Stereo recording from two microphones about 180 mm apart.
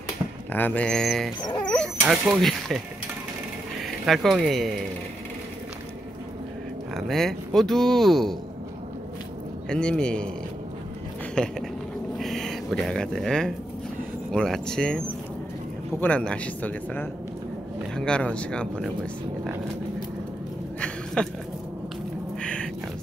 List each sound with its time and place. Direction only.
0.5 s speech: 10° left (ahead or behind)
4.0 s speech: centre (ahead or behind)
6.9 s speech: centre (ahead or behind)
9.7 s speech: 5° left (ahead or behind)
11.4 s a man's voice: 5° left (ahead or behind)
20.8 s a sound: 5° left (ahead or behind)
22.4 s a sound: 5° left (ahead or behind)